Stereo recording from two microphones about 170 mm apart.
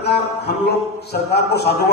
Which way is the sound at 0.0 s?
75° left (ahead or behind).